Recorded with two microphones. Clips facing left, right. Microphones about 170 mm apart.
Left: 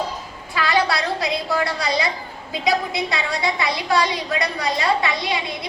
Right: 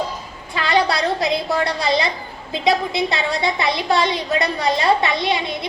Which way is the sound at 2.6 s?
25° right (ahead or behind).